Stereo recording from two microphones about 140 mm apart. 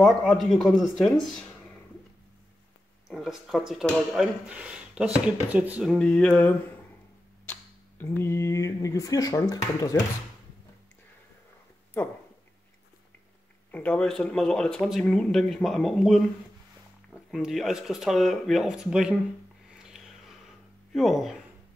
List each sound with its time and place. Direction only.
0.0 s speech: 5° left (ahead or behind)
3.1 s speech: centre (ahead or behind)
5.9 s a sound: 5° left (ahead or behind)
8.0 s speech: 15° left (ahead or behind)
13.7 s speech: 10° left (ahead or behind)
19.8 s a sound: centre (ahead or behind)